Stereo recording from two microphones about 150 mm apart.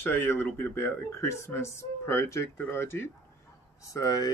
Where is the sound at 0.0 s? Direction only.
15° left (ahead or behind).